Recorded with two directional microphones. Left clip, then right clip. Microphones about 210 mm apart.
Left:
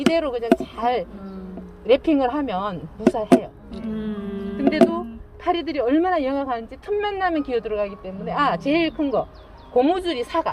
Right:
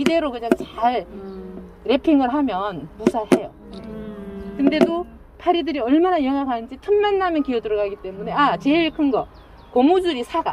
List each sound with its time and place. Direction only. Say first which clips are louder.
0.1 s a woman's voice: right 1 dB; 45° right (ahead or behind)
0.6 s a sound: right 2 dB; 45° right (ahead or behind)
1.9 s a woman's voice: even; 45° right (ahead or behind)
3.9 s speech: left 4 dB; 50° left (ahead or behind)
5.5 s a woman's voice: right 2 dB; 45° right (ahead or behind)
9.7 s a woman's voice: right 2 dB; 35° right (ahead or behind)